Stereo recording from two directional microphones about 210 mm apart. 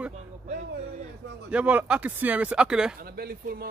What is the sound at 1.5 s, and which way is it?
Speech, 5° right (ahead or behind).